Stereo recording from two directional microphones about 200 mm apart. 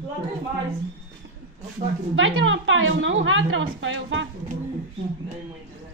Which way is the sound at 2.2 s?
75° right (ahead or behind).